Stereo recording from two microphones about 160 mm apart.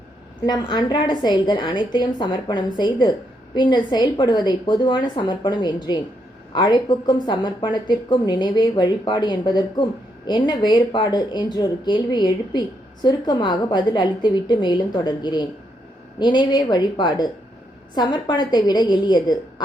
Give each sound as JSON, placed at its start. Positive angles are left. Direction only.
{"t": 0.4, "sound": "a woman's voice", "side_deg": 25}